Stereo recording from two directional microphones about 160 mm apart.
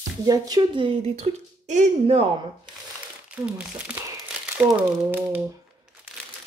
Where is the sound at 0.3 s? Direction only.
25° right (ahead or behind); by 2.2 s 45° right (ahead or behind).